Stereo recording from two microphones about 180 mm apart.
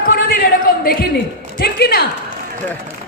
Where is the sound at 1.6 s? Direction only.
60° left (ahead or behind).